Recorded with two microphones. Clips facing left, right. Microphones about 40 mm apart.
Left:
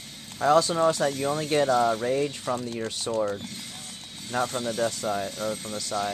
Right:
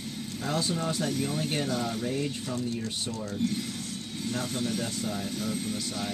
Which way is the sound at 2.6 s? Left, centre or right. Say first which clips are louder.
Left 1 dB; left.